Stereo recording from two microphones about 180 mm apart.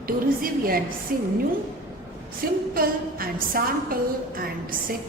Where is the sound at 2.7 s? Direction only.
55° right (ahead or behind).